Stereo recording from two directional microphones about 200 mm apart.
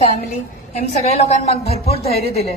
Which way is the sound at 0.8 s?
30° left (ahead or behind).